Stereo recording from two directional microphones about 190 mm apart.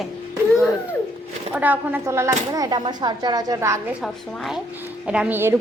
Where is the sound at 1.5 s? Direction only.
10° right (ahead or behind).